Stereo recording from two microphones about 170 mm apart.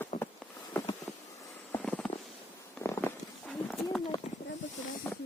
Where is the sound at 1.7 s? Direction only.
5° left (ahead or behind).